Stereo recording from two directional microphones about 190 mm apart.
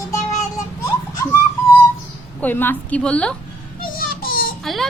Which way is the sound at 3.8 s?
50° left (ahead or behind).